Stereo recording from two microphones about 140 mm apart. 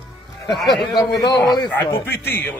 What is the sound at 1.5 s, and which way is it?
Speech, 30° left (ahead or behind).